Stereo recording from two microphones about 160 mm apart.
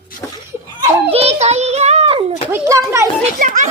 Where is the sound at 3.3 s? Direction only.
50° right (ahead or behind).